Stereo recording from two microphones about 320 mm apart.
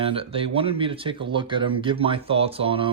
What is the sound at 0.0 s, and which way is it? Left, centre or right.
Speech, centre.